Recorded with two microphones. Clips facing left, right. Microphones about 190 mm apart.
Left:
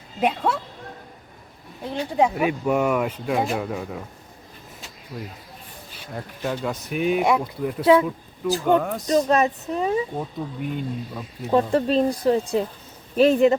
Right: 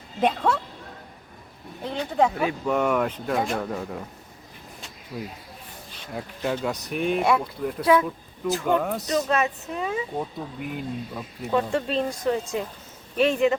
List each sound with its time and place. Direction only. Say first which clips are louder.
0.2 s speech: even; 10° left (ahead or behind)
1.8 s speech: left 1 dB; 10° left (ahead or behind)
5.1 s speech: right 1 dB; 5° right (ahead or behind)
7.8 s speech: left 4 dB; 25° left (ahead or behind)
8.6 s speech: left 4 dB; centre (ahead or behind)
9.3 s speech: left 4 dB; 35° left (ahead or behind)
10.2 s speech: left 2 dB; 5° right (ahead or behind)
11.5 s speech: left 5 dB; 40° left (ahead or behind)